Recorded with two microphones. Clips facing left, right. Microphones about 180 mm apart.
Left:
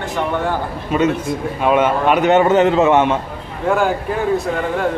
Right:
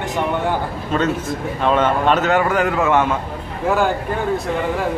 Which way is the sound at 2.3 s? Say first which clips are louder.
Left 5 dB; 25° left (ahead or behind).